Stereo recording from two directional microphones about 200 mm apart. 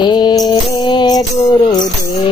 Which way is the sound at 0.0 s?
20° left (ahead or behind).